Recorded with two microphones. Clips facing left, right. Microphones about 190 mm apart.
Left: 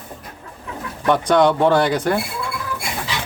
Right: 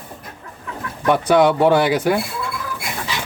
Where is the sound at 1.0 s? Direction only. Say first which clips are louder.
Right 1 dB; 10° right (ahead or behind).